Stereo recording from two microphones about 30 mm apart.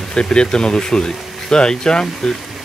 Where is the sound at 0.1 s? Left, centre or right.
Left.